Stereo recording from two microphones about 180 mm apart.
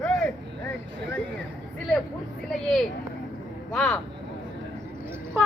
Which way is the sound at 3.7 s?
5° left (ahead or behind).